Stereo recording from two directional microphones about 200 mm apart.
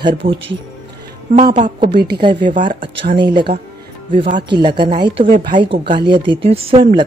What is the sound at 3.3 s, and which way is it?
Speech, 25° right (ahead or behind).